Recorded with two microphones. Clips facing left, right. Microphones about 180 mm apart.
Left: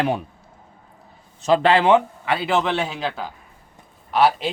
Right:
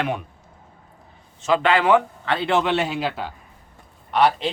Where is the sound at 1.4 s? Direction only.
35° left (ahead or behind).